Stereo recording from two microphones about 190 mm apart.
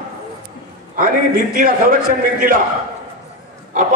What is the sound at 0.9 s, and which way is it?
A man's voice, 45° right (ahead or behind).